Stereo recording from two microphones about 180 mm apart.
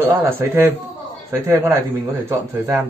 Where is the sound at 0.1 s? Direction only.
15° right (ahead or behind).